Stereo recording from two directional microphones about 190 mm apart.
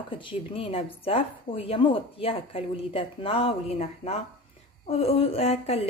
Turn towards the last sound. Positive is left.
turn(degrees=35)  # may be behind; listen again after turning